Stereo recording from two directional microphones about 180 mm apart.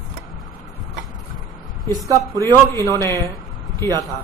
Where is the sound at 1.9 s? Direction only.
20° right (ahead or behind).